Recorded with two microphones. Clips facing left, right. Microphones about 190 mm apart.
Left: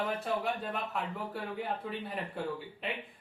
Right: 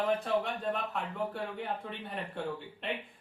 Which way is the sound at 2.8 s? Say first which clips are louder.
Right 2 dB; centre (ahead or behind).